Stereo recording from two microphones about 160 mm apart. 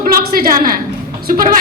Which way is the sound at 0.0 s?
65° right (ahead or behind).